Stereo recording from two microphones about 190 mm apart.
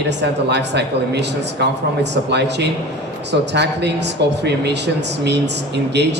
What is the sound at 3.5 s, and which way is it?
Speech, 65° right (ahead or behind).